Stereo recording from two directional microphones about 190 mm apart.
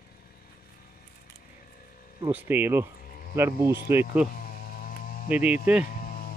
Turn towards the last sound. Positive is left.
turn(degrees=45)  # may be behind; listen again after turning